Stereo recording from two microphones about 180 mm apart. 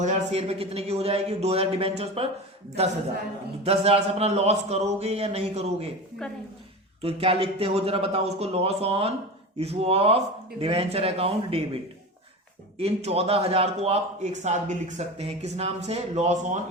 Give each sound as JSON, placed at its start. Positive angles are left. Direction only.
{"t": 0.0, "sound": "a man's voice", "side_deg": -35}
{"t": 3.6, "sound": "a man's voice", "side_deg": -35}
{"t": 7.0, "sound": "a man's voice", "side_deg": -35}
{"t": 12.8, "sound": "a man's voice", "side_deg": -35}